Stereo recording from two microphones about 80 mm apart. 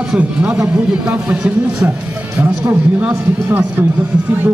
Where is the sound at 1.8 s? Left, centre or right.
Right.